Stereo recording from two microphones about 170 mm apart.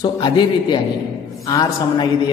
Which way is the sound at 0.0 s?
25° left (ahead or behind).